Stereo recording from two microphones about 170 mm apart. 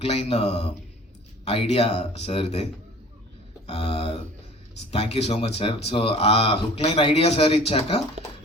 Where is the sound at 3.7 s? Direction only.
35° left (ahead or behind).